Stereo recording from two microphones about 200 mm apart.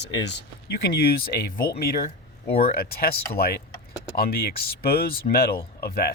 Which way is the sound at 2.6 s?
50° left (ahead or behind).